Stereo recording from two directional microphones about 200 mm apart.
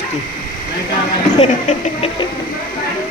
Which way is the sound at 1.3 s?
35° left (ahead or behind).